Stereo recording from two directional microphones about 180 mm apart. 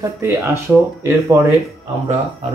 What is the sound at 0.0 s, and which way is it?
Speech, 15° right (ahead or behind).